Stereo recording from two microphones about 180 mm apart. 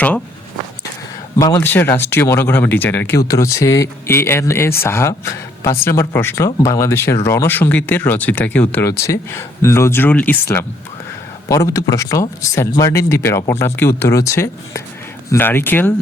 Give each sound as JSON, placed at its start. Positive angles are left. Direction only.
{"t": 1.4, "sound": "speech", "side_deg": 15}
{"t": 11.4, "sound": "speech", "side_deg": 15}